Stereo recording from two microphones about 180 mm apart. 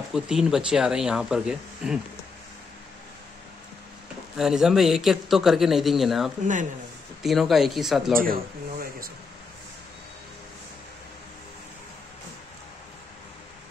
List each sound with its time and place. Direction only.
0.1 s a man's voice: 5° right (ahead or behind)
4.4 s a man's voice: 5° right (ahead or behind)
6.4 s speech: 45° right (ahead or behind)
7.2 s a man's voice: centre (ahead or behind)
8.2 s speech: 50° right (ahead or behind)